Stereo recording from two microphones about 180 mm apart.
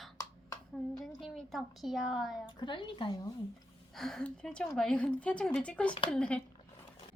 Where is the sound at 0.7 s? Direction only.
Centre (ahead or behind).